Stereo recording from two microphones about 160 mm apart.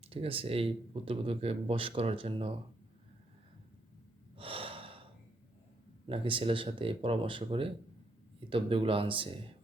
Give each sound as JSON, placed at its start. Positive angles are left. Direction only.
{"t": 0.1, "sound": "speech", "side_deg": -35}
{"t": 4.4, "sound": "gasp", "side_deg": -35}
{"t": 6.1, "sound": "speech", "side_deg": -35}